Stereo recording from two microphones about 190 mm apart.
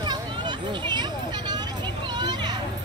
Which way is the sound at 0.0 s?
25° right (ahead or behind).